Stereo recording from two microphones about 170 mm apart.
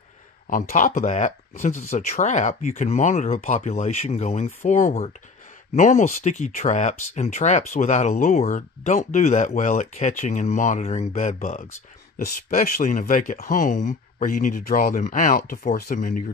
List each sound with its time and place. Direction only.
0.5 s speech: 55° left (ahead or behind)